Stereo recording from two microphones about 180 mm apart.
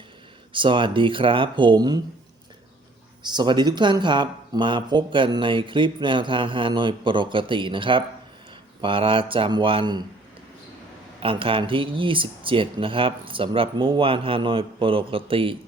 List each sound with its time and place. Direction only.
0.5 s speech: 25° right (ahead or behind)
3.2 s speech: 25° right (ahead or behind)
11.2 s speech: 30° right (ahead or behind)